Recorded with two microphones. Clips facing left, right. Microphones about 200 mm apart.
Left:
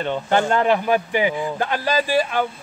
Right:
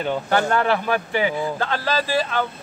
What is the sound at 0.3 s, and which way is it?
Speech, 20° left (ahead or behind).